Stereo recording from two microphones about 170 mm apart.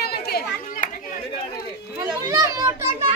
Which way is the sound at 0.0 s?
70° left (ahead or behind).